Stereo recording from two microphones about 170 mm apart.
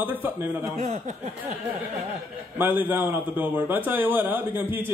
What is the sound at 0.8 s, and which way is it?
Speech, 45° right (ahead or behind).